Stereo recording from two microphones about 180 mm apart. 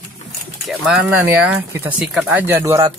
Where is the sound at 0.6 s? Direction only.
5° right (ahead or behind).